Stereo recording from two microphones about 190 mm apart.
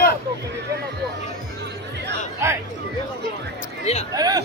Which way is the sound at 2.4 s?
15° right (ahead or behind).